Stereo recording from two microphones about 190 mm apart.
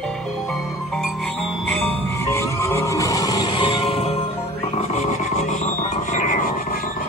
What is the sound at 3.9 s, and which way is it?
Music, 35° left (ahead or behind).